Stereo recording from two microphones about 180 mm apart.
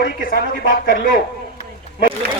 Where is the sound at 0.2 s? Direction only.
55° left (ahead or behind).